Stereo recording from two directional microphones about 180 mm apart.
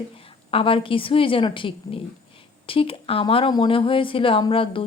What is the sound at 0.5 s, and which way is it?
Speech, 30° left (ahead or behind).